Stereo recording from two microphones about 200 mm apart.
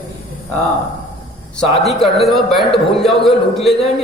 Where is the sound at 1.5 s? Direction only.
Centre (ahead or behind).